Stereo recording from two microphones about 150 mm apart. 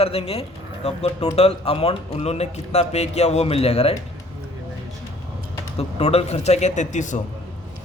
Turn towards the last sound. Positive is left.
turn(degrees=55)  # may be behind; listen again after turning